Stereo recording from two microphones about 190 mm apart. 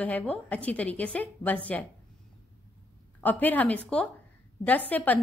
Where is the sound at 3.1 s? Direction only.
10° left (ahead or behind).